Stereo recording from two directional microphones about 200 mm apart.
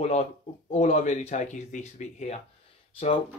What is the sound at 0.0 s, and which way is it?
Speech, 30° left (ahead or behind).